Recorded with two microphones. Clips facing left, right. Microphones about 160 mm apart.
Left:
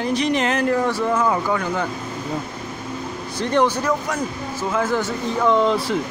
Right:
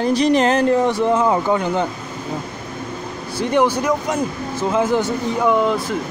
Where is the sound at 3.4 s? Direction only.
10° right (ahead or behind).